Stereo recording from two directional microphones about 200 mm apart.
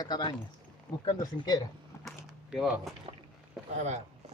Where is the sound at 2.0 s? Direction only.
5° right (ahead or behind).